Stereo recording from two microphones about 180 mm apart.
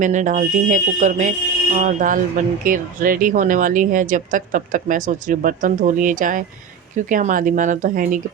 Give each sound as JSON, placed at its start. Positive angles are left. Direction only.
{"t": 0.0, "sound": "speech", "side_deg": -45}